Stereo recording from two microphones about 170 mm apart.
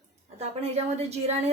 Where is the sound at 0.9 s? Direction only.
40° right (ahead or behind).